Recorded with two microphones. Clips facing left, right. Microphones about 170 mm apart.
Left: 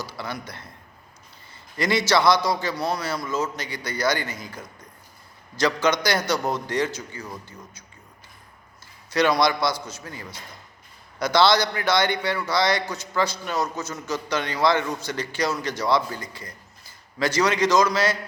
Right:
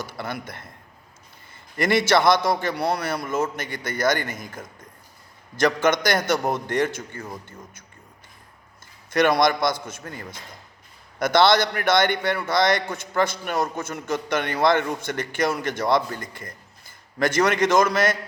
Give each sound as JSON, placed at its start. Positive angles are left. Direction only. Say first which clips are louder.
{"t": 0.0, "sound": "a man's voice", "louder": "right 1 dB", "side_deg": -55}
{"t": 1.8, "sound": "a man's voice", "louder": "right 2 dB", "side_deg": -55}
{"t": 9.0, "sound": "a man's voice", "louder": "right 2 dB", "side_deg": -50}